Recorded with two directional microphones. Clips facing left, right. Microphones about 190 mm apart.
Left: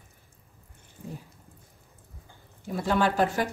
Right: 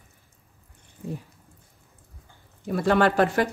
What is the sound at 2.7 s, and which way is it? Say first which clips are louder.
Speech: right 5 dB; 65° right (ahead or behind).